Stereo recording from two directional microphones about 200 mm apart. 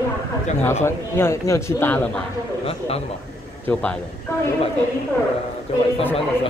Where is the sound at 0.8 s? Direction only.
10° left (ahead or behind).